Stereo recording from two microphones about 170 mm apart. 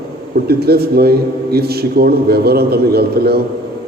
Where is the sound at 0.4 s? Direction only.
65° right (ahead or behind).